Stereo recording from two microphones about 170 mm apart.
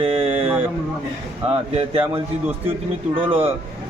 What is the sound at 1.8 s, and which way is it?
Speech, 35° right (ahead or behind).